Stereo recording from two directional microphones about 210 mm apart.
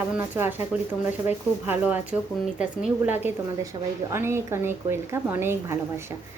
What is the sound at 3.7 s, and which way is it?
A woman's voice, 20° right (ahead or behind).